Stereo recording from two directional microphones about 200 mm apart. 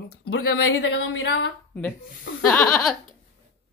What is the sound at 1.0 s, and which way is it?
Speech, 70° left (ahead or behind).